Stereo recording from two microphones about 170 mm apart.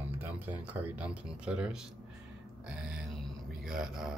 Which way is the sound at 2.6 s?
5° right (ahead or behind).